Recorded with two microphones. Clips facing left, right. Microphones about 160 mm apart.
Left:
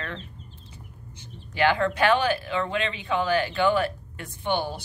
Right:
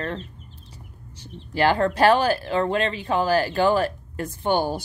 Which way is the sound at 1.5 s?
35° right (ahead or behind).